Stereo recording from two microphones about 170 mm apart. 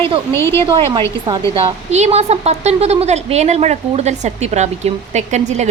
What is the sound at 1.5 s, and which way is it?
A woman's voice, 40° right (ahead or behind).